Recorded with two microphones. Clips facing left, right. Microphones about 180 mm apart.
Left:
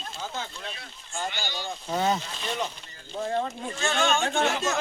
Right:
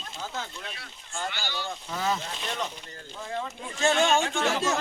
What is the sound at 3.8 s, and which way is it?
Speech, 35° right (ahead or behind).